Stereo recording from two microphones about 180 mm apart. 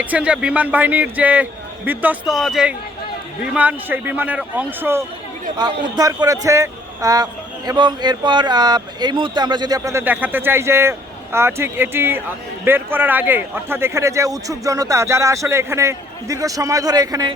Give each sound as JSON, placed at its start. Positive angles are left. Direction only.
{"t": 0.0, "sound": "speech", "side_deg": -10}
{"t": 5.5, "sound": "a man's voice", "side_deg": -25}